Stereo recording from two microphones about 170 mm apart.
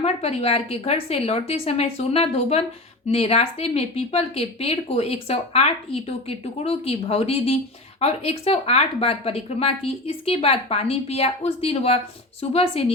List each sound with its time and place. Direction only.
0.0 s speech: 40° left (ahead or behind)